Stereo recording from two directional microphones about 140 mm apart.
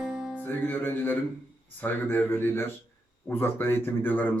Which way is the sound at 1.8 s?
15° left (ahead or behind).